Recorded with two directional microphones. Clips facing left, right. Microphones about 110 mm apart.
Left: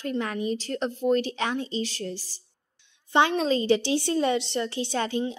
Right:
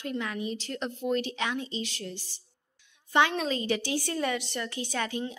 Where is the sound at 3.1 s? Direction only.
30° left (ahead or behind).